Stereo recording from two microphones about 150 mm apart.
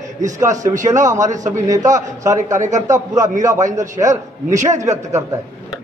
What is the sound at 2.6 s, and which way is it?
Speech, 55° right (ahead or behind).